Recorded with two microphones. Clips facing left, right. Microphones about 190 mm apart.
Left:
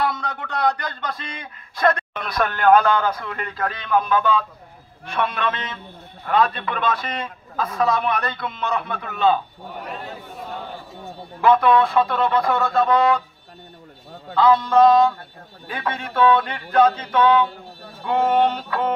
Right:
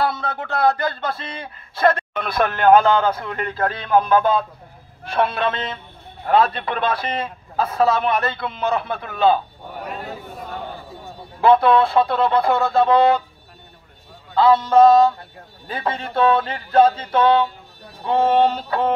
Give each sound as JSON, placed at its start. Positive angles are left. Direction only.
{"t": 0.0, "sound": "a man's voice", "side_deg": -30}
{"t": 11.4, "sound": "a man's voice", "side_deg": -30}
{"t": 14.3, "sound": "a man's voice", "side_deg": -35}